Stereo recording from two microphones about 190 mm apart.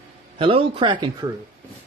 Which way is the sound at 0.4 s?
30° right (ahead or behind).